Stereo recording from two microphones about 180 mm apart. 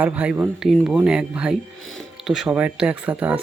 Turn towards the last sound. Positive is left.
turn(degrees=-10)  # may be behind; listen again after turning